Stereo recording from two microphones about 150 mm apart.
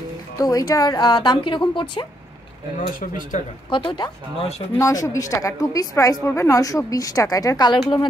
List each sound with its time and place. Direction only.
0.4 s a woman's voice: 25° left (ahead or behind)
3.0 s speech: 60° left (ahead or behind)
3.7 s a woman's voice: 30° left (ahead or behind)